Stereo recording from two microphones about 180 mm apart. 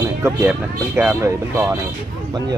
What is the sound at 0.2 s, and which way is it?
Speech, 10° right (ahead or behind).